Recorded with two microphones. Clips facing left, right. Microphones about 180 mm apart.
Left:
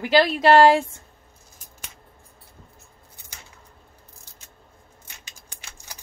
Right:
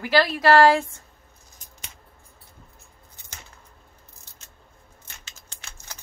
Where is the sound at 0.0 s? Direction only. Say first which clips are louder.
Left 2 dB; 20° left (ahead or behind).